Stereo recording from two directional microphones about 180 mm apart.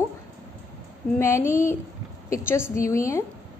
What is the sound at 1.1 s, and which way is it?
A woman's voice, 15° left (ahead or behind).